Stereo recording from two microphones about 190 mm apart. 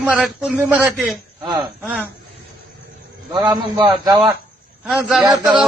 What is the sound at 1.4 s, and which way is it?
Speech, 20° right (ahead or behind).